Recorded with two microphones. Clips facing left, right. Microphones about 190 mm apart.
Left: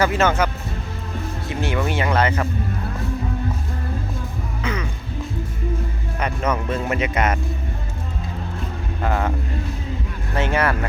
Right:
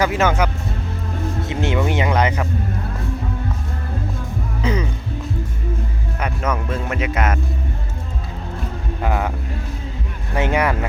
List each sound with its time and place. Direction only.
0.0 s speech: 10° right (ahead or behind)
4.6 s music: 30° right (ahead or behind)
6.1 s speech: 5° right (ahead or behind)
9.0 s speech: 10° right (ahead or behind)
10.3 s speech: 15° right (ahead or behind)